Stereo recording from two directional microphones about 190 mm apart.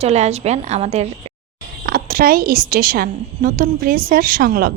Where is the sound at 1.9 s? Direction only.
50° right (ahead or behind).